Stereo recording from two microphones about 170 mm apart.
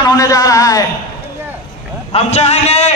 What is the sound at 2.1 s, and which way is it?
Speech, 40° left (ahead or behind).